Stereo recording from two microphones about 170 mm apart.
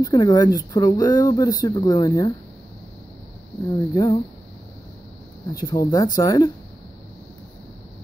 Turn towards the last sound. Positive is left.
turn(degrees=20)  # may be behind; listen again after turning